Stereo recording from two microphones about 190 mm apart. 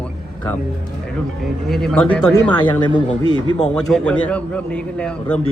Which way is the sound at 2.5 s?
25° left (ahead or behind).